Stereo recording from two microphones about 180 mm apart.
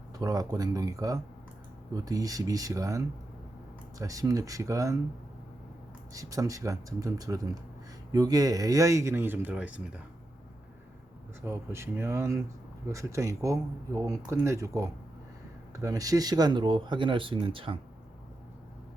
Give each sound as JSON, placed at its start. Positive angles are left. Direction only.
{"t": 0.1, "sound": "speech", "side_deg": -20}
{"t": 6.1, "sound": "speech", "side_deg": -20}
{"t": 11.4, "sound": "speech", "side_deg": -15}